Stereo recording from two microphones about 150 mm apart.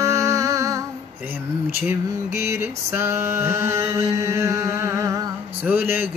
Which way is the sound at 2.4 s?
20° right (ahead or behind).